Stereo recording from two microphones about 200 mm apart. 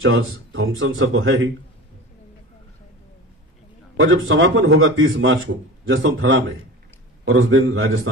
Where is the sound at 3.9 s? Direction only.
80° right.